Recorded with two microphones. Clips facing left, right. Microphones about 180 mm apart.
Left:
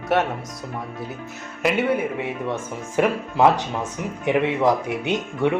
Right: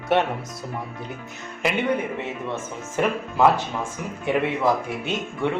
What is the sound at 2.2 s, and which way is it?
Speech, 15° left (ahead or behind).